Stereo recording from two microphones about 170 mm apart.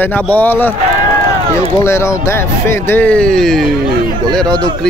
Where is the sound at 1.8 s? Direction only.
15° left (ahead or behind).